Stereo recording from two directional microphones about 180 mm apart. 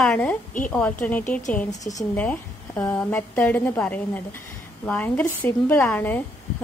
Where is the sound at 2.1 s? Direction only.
10° left (ahead or behind).